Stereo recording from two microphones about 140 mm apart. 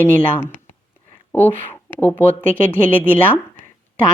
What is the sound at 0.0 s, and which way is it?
A woman's voice, 15° left (ahead or behind).